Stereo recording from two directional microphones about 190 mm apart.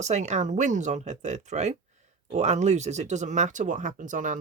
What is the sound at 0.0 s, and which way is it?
Speech, 35° right (ahead or behind).